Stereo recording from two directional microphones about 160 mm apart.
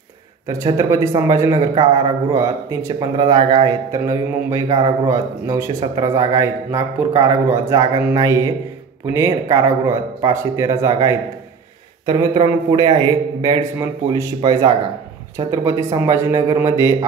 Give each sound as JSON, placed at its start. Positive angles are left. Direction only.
{"t": 0.7, "sound": "a man's voice", "side_deg": -20}